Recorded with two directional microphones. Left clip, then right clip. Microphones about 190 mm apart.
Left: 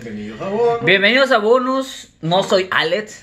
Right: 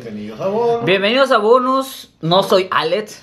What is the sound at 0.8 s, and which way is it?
Speech, 5° left (ahead or behind).